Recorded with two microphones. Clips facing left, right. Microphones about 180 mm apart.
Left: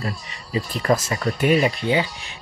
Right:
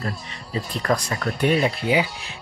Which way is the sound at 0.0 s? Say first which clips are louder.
Even; 5° left (ahead or behind).